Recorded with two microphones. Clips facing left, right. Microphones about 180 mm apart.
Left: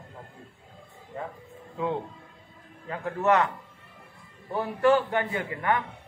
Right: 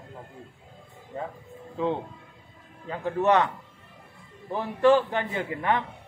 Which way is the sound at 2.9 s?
20° right (ahead or behind).